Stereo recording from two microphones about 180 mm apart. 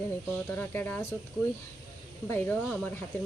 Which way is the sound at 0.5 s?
10° left (ahead or behind).